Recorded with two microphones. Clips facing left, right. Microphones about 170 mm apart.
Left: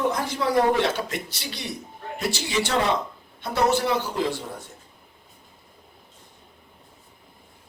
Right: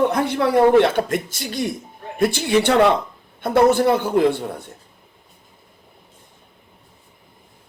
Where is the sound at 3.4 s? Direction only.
55° right (ahead or behind).